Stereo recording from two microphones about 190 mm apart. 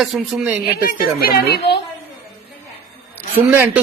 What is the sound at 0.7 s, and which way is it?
A woman's voice, 50° left (ahead or behind).